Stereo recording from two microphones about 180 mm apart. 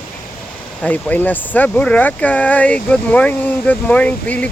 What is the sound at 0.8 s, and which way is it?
Speech, 10° left (ahead or behind).